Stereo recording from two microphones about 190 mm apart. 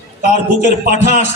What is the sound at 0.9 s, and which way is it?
Speech, 35° left (ahead or behind).